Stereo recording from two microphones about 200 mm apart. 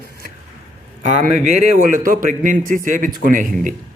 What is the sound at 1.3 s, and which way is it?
A man's voice, 35° right (ahead or behind).